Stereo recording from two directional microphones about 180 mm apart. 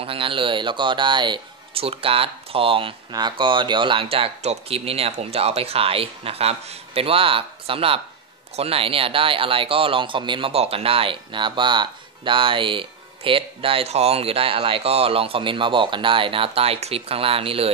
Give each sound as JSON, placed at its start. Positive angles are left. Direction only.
{"t": 0.0, "sound": "speech", "side_deg": -30}